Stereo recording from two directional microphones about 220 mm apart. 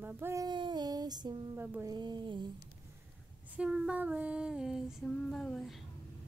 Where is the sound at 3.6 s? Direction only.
5° right (ahead or behind).